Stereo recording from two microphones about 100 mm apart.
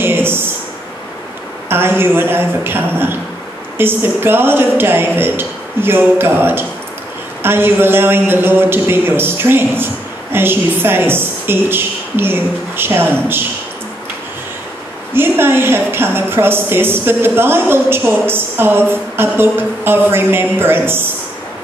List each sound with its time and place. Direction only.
0.0 s a sound: 20° right (ahead or behind)
1.7 s a woman's voice: 20° right (ahead or behind)
15.1 s a woman's voice: 20° right (ahead or behind)